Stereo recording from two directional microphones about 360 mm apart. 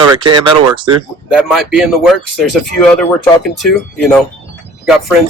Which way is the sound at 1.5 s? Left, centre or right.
Centre.